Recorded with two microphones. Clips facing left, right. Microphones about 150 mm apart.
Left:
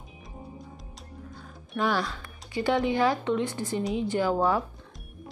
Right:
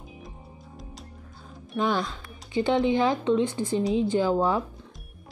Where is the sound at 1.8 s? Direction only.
20° right (ahead or behind).